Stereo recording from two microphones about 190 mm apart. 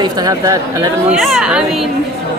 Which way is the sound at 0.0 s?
20° right (ahead or behind).